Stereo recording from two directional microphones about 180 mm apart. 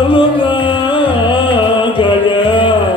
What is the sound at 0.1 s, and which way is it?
Music, 25° left (ahead or behind).